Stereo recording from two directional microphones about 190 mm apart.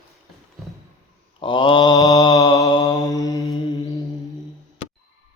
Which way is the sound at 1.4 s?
25° left (ahead or behind).